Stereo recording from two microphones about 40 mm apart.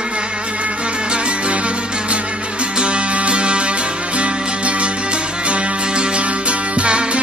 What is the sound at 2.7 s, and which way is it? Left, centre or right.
Music, right.